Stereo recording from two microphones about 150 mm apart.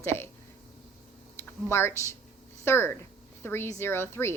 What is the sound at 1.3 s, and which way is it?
A woman's voice, 15° left (ahead or behind).